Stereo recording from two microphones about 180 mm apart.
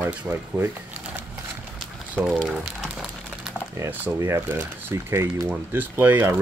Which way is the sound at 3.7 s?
10° right (ahead or behind).